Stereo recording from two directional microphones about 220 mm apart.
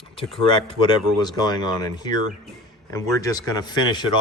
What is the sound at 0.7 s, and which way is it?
Speech, 20° left (ahead or behind).